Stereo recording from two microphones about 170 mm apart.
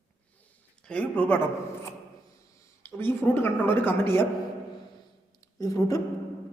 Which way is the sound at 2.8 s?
10° left (ahead or behind).